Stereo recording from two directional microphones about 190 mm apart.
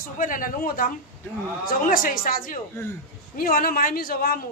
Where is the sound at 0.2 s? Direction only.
45° left (ahead or behind).